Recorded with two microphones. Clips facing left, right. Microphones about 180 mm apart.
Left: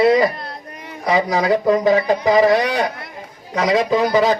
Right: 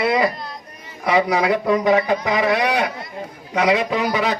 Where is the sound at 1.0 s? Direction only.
35° left (ahead or behind).